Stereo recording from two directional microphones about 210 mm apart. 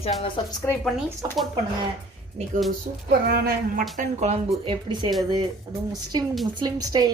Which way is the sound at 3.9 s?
30° right (ahead or behind).